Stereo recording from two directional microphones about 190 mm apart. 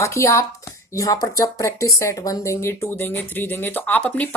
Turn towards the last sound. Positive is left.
turn(degrees=10)  # may be behind; listen again after turning